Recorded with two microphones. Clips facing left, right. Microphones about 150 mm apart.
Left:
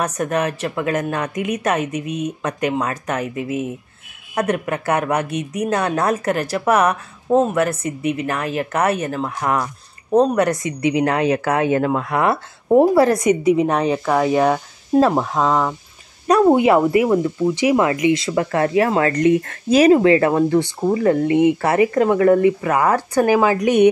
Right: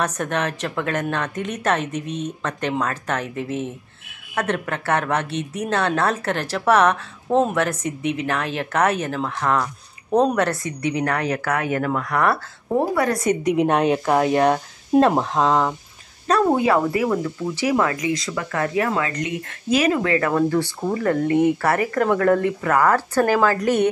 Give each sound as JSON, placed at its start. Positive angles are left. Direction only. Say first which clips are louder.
{"t": 0.0, "sound": "a woman's voice", "louder": "left 3 dB", "side_deg": 10}
{"t": 13.2, "sound": "a woman's voice", "louder": "left 4 dB", "side_deg": 10}
{"t": 16.3, "sound": "a woman's voice", "louder": "left 5 dB", "side_deg": 15}
{"t": 18.0, "sound": "speech", "louder": "left 7 dB", "side_deg": 30}
{"t": 19.0, "sound": "a woman's voice", "louder": "left 11 dB", "side_deg": 45}